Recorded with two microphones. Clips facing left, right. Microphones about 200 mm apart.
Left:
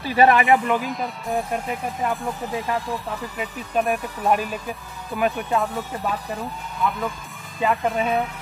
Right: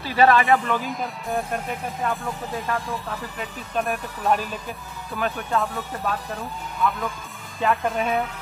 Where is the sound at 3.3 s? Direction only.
5° left (ahead or behind).